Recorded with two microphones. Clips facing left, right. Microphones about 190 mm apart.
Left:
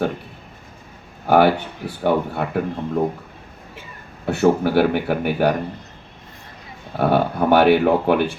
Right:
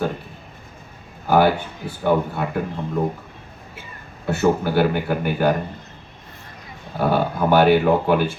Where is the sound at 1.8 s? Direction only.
60° left (ahead or behind).